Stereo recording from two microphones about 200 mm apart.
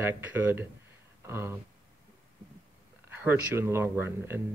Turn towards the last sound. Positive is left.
turn(degrees=-10)  # may be behind; listen again after turning